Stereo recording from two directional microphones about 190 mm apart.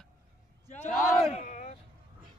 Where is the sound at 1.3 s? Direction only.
40° left (ahead or behind).